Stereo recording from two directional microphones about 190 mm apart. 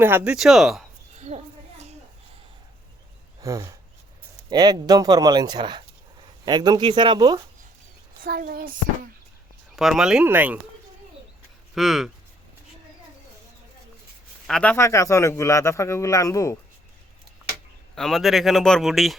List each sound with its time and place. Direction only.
0.0 s speech: 10° right (ahead or behind)
1.1 s a sound: 35° right (ahead or behind)
3.4 s speech: 15° right (ahead or behind)
8.2 s speech: 50° right (ahead or behind)
9.7 s speech: centre (ahead or behind)
11.7 s speech: centre (ahead or behind)
14.4 s a man's voice: 5° left (ahead or behind)
17.9 s speech: centre (ahead or behind)